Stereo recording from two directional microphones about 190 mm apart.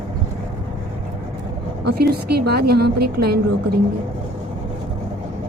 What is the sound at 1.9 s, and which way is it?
A woman's voice, 55° right (ahead or behind).